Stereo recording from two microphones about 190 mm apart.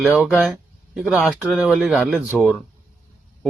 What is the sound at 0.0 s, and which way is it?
Speech, 5° right (ahead or behind).